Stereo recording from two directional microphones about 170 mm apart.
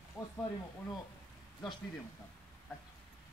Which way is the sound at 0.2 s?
20° left (ahead or behind).